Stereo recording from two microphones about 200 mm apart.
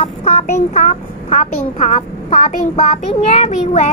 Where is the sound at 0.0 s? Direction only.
30° left (ahead or behind).